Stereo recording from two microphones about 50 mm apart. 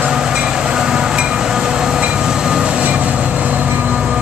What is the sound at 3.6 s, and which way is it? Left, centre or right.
Vehicle, right.